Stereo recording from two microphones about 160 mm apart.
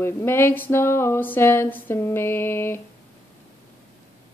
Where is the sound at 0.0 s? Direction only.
15° left (ahead or behind).